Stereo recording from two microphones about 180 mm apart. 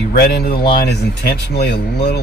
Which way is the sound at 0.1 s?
60° left (ahead or behind).